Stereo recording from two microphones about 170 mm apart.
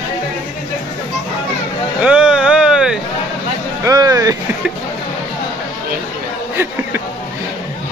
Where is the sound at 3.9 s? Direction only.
20° right (ahead or behind).